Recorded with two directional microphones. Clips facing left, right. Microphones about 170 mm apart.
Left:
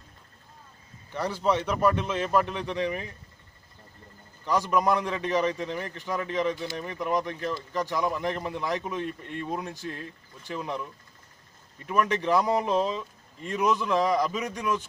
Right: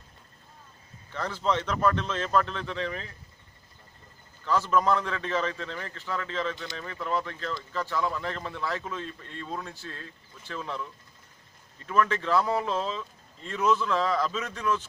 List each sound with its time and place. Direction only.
1.1 s a man's voice: 10° left (ahead or behind)
4.5 s a man's voice: 15° left (ahead or behind)